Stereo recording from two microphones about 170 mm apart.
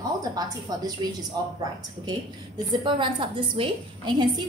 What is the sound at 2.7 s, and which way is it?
A woman's voice, 30° right (ahead or behind).